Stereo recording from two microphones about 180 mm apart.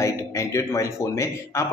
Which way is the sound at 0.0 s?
15° left (ahead or behind).